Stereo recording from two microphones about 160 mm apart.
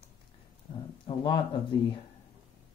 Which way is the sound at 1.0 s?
30° left (ahead or behind).